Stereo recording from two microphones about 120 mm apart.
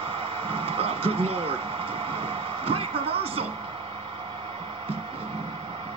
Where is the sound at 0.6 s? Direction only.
50° right (ahead or behind).